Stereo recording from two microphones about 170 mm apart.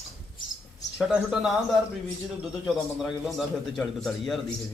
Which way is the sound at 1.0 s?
5° right (ahead or behind).